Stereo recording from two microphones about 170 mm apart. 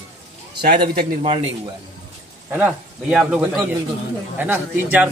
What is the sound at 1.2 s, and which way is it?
Speech, 35° right (ahead or behind).